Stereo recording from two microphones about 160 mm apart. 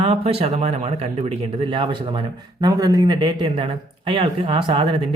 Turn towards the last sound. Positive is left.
turn(degrees=-35)  # may be behind; listen again after turning